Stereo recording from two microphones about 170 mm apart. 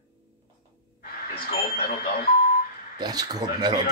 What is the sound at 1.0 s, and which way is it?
Radio, 60° left (ahead or behind).